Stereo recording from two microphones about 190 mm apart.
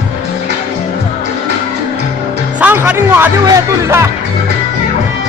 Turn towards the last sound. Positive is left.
turn(degrees=-15)  # may be behind; listen again after turning